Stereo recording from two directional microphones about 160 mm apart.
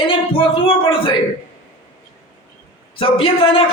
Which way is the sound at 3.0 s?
35° left (ahead or behind).